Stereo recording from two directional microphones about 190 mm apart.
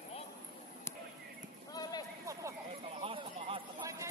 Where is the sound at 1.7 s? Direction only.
20° left (ahead or behind).